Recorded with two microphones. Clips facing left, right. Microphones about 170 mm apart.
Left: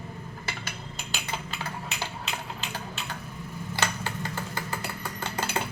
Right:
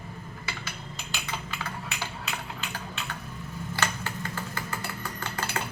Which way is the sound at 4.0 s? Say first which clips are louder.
Left 1 dB; 30° left (ahead or behind).